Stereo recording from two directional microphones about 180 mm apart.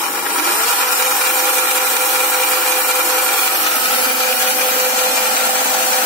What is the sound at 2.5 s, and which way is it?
Wood, 15° left (ahead or behind).